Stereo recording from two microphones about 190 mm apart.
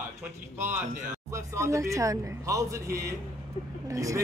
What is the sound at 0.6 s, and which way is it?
A man's voice, 10° right (ahead or behind).